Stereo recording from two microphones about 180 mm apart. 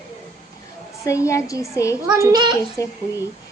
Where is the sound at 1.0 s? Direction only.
15° left (ahead or behind).